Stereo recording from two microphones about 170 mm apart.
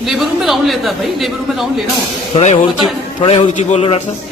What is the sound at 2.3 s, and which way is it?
A man's voice, 40° left (ahead or behind).